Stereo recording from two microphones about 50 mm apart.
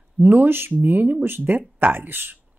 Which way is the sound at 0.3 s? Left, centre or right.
Right.